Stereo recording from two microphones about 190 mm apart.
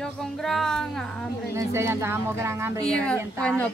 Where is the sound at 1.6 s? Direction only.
15° right (ahead or behind).